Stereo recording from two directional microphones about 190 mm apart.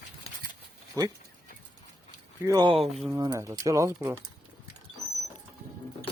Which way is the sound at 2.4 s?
20° right (ahead or behind).